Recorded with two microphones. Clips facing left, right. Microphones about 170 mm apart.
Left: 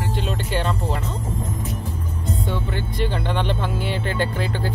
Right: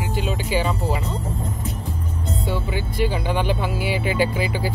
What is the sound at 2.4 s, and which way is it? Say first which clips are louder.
Speech: right 2 dB; 5° right (ahead or behind).